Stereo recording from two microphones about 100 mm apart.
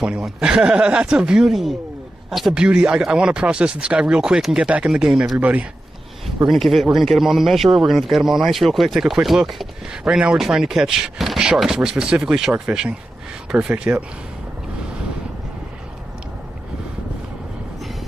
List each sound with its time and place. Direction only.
0.0 s speech: 10° right (ahead or behind)
6.4 s a man's voice: centre (ahead or behind)